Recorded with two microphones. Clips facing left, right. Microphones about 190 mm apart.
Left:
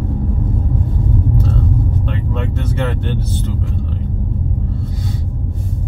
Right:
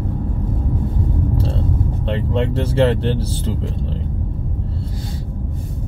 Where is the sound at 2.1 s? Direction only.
30° right (ahead or behind).